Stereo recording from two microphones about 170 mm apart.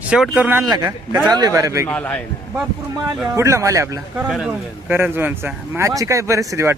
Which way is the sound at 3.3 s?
15° right (ahead or behind).